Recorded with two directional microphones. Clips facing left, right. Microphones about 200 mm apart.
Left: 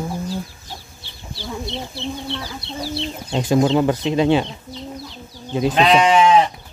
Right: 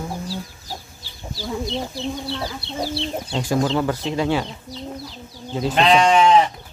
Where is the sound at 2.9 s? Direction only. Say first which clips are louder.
Right 1 dB; 30° right (ahead or behind).